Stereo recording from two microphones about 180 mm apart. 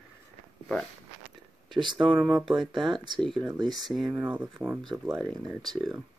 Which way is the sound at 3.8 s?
Centre (ahead or behind).